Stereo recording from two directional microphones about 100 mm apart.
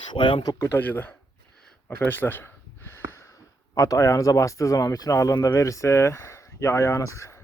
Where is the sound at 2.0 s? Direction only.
20° left (ahead or behind).